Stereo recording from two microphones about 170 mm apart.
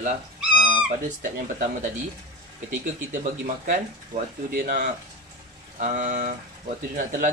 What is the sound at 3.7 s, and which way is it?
Speech, 50° right (ahead or behind).